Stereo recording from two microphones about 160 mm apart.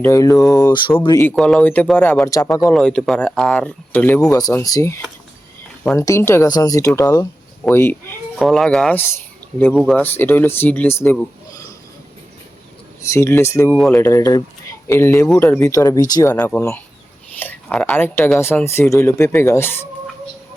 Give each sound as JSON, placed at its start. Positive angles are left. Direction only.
{"t": 0.0, "sound": "speech", "side_deg": 20}
{"t": 1.1, "sound": "speech", "side_deg": 15}
{"t": 2.7, "sound": "speech", "side_deg": 5}
{"t": 8.4, "sound": "speech", "side_deg": 0}
{"t": 10.0, "sound": "speech", "side_deg": 10}
{"t": 13.1, "sound": "speech", "side_deg": 15}
{"t": 13.7, "sound": "speech", "side_deg": 5}
{"t": 14.0, "sound": "speech", "side_deg": 20}
{"t": 16.3, "sound": "speech", "side_deg": 10}